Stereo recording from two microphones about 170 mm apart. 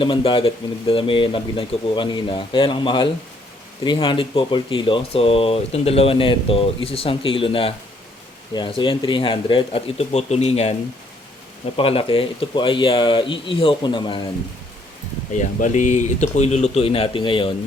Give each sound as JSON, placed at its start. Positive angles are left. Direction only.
{"t": 0.0, "sound": "speech", "side_deg": 30}
{"t": 11.8, "sound": "speech", "side_deg": 35}
{"t": 15.3, "sound": "speech", "side_deg": 45}